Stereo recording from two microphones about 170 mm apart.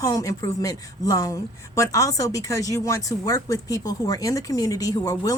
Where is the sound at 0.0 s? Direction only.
20° left (ahead or behind).